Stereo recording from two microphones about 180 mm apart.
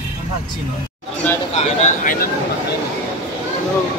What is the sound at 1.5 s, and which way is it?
Speech, 40° left (ahead or behind).